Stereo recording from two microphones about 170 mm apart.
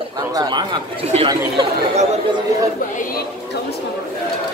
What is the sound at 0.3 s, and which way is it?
Speech, 25° right (ahead or behind).